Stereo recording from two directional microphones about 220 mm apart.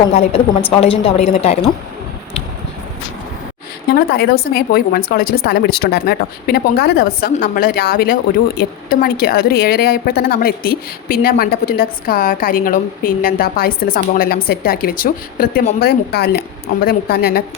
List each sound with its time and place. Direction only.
0.1 s a woman's voice: 30° left (ahead or behind)
3.8 s a woman's voice: 45° left (ahead or behind)